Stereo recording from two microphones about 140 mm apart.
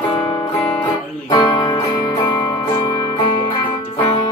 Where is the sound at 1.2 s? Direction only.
30° left (ahead or behind).